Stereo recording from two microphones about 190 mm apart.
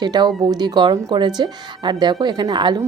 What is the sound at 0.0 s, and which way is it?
A woman's voice, 20° right (ahead or behind).